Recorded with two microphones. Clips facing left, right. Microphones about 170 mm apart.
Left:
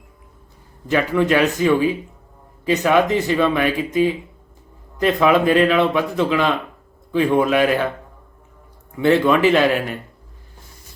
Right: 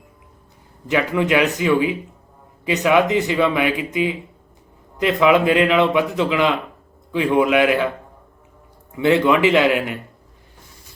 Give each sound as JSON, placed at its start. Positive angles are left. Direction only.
{"t": 0.9, "sound": "a man's voice", "side_deg": -15}
{"t": 9.0, "sound": "a man's voice", "side_deg": -15}